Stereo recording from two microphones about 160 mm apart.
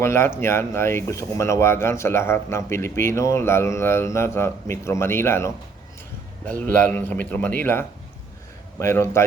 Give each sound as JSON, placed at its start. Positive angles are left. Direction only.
{"t": 0.0, "sound": "speech", "side_deg": 15}